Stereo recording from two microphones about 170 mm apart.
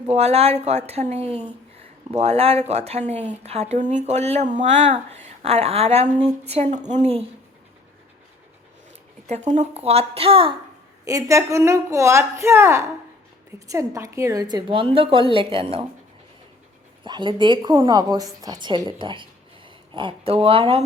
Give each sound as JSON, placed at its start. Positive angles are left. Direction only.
{"t": 0.1, "sound": "speech", "side_deg": -40}
{"t": 9.2, "sound": "speech", "side_deg": -40}
{"t": 11.0, "sound": "a woman's voice", "side_deg": -20}
{"t": 17.0, "sound": "a woman's voice", "side_deg": -30}